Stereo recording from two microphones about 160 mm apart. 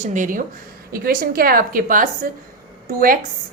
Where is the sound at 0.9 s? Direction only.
65° right (ahead or behind).